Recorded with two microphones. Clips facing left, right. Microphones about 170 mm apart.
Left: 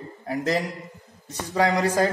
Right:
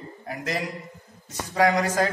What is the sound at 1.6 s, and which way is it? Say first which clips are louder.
Speech: even; 30° left (ahead or behind).